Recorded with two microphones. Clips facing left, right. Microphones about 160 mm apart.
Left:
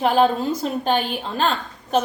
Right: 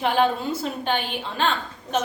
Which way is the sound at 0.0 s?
40° left (ahead or behind).